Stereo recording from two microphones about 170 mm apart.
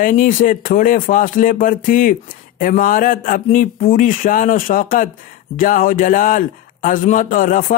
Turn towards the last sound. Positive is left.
turn(degrees=50)  # may be behind; listen again after turning